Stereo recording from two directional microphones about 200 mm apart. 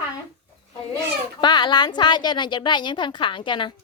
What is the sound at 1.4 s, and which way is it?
A woman's voice, 20° left (ahead or behind).